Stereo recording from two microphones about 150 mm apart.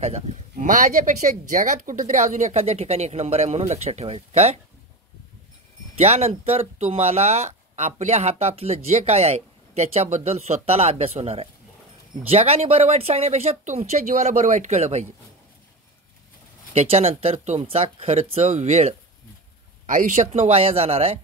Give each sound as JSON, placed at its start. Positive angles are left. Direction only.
{"t": 0.0, "sound": "speech", "side_deg": -45}
{"t": 0.7, "sound": "speech", "side_deg": -60}
{"t": 5.9, "sound": "speech", "side_deg": -45}
{"t": 16.7, "sound": "speech", "side_deg": -45}
{"t": 19.9, "sound": "speech", "side_deg": -60}